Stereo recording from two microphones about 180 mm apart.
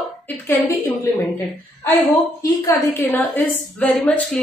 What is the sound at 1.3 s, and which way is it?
A woman's voice, 20° left (ahead or behind).